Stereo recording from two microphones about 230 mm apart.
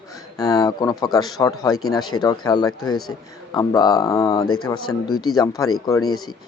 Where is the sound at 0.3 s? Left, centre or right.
Centre.